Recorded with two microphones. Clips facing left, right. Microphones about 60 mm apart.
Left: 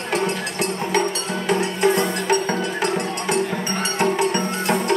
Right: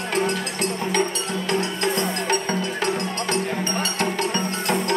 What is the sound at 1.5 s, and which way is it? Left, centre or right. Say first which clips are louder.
Music: left 6 dB; left.